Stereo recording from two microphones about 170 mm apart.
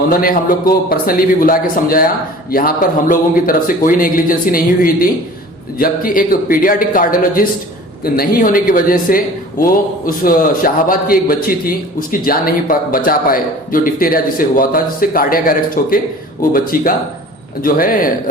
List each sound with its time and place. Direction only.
0.1 s a man's voice: 60° left (ahead or behind)